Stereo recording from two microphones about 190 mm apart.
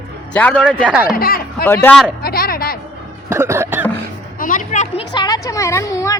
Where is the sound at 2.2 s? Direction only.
50° left (ahead or behind).